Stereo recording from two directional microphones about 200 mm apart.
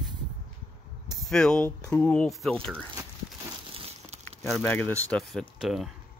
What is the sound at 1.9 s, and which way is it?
Speech, 5° left (ahead or behind).